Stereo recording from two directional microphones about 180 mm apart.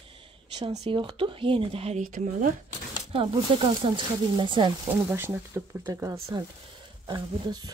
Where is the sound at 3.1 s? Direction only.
30° right (ahead or behind).